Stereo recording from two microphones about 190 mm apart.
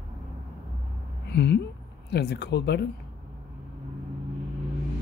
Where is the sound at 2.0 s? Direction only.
60° left (ahead or behind).